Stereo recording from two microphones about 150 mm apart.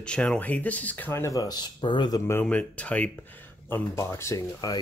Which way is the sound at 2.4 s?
10° left (ahead or behind).